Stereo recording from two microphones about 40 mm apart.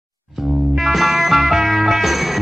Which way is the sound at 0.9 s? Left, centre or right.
Centre.